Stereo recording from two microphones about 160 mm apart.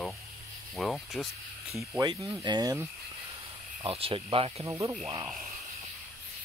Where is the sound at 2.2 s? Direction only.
25° right (ahead or behind).